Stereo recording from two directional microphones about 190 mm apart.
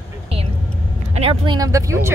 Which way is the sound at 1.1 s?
30° right (ahead or behind).